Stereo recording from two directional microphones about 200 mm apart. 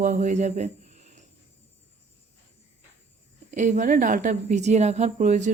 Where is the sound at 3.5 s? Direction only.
40° right (ahead or behind).